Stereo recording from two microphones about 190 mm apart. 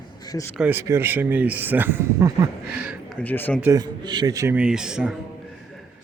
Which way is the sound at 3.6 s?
15° right (ahead or behind).